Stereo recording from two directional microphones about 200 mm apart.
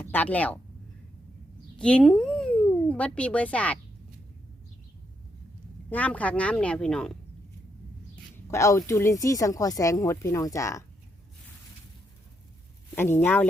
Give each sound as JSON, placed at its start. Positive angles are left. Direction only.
{"t": 0.0, "sound": "a woman's voice", "side_deg": 10}
{"t": 1.8, "sound": "speech", "side_deg": 5}
{"t": 5.9, "sound": "speech", "side_deg": 5}
{"t": 8.4, "sound": "speech", "side_deg": 15}
{"t": 13.0, "sound": "speech", "side_deg": 10}